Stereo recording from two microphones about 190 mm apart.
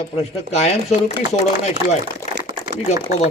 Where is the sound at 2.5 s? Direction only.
40° left (ahead or behind).